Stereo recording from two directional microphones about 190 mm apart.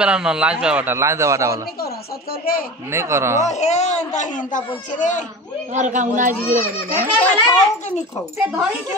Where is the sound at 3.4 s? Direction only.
35° left (ahead or behind).